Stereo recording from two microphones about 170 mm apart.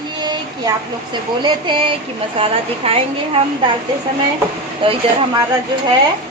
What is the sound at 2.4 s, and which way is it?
Child singing, 35° right (ahead or behind).